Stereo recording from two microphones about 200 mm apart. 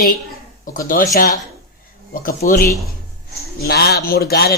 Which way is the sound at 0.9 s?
45° left (ahead or behind).